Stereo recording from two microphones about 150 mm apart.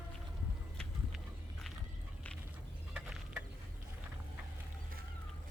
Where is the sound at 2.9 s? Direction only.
10° right (ahead or behind).